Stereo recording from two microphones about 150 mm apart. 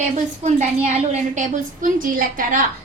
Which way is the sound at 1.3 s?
60° right (ahead or behind).